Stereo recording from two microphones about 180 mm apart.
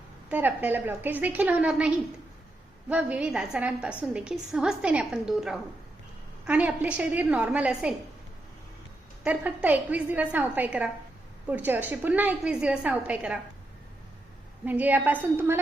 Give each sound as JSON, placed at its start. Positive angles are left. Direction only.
{"t": 0.3, "sound": "a woman's voice", "side_deg": -10}
{"t": 2.9, "sound": "a woman's voice", "side_deg": -5}
{"t": 9.2, "sound": "a woman's voice", "side_deg": -5}
{"t": 14.6, "sound": "a woman's voice", "side_deg": -10}